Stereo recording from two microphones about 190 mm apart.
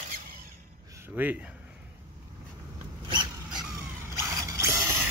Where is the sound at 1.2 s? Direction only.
10° right (ahead or behind).